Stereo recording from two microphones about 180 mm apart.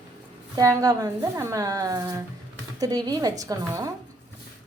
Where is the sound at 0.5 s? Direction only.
20° right (ahead or behind).